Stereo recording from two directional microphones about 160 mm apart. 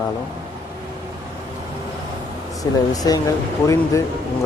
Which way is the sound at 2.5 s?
20° left (ahead or behind).